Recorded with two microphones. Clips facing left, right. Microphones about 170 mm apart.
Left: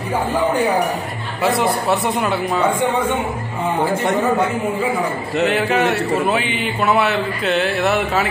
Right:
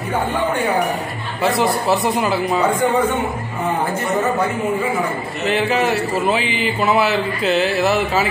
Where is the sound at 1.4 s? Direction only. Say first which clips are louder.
Even; centre (ahead or behind).